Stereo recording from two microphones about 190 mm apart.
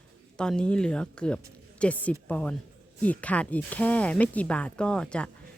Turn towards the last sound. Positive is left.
turn(degrees=5)  # may be behind; listen again after turning